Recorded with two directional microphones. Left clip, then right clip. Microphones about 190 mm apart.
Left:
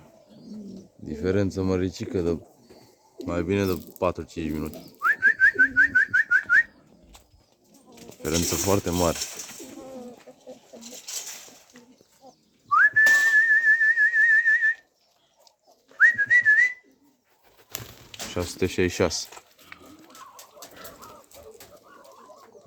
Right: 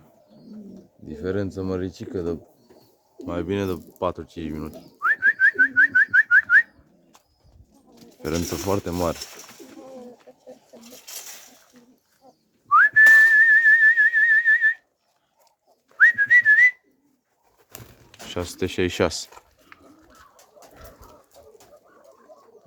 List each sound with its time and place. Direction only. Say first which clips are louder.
1.0 s speech: left 2 dB; 5° left (ahead or behind)
3.2 s bird: left 1 dB; 10° right (ahead or behind)
7.9 s speech: even; 15° right (ahead or behind)
10.7 s bird: left 2 dB; 25° right (ahead or behind)
12.7 s whistling: right 5 dB; 25° right (ahead or behind); by 14.7 s centre (ahead or behind)
16.0 s whistling: right 3 dB; 5° right (ahead or behind)
18.3 s speech: even; 10° right (ahead or behind)